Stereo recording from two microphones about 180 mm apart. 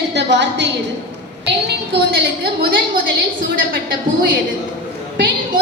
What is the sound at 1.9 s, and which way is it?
Speech, 65° right (ahead or behind).